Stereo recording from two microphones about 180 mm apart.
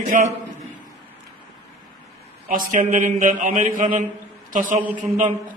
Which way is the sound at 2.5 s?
50° right (ahead or behind).